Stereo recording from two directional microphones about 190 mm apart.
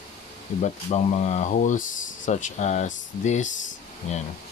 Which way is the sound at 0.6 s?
40° left (ahead or behind).